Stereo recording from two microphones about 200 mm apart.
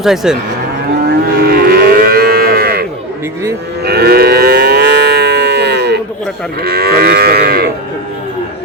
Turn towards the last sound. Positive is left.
turn(degrees=-50)  # may be behind; listen again after turning